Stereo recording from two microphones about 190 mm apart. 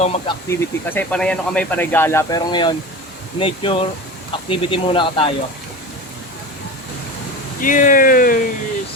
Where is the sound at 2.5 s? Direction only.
25° left (ahead or behind).